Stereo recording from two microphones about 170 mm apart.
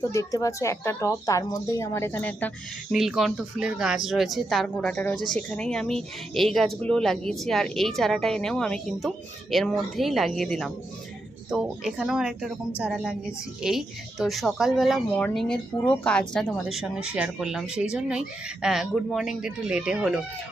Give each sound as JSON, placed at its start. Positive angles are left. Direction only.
{"t": 0.0, "sound": "speech", "side_deg": 20}
{"t": 2.9, "sound": "a woman's voice", "side_deg": 0}